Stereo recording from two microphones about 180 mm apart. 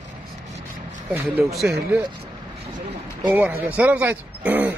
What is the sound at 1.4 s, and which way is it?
Speech, centre (ahead or behind).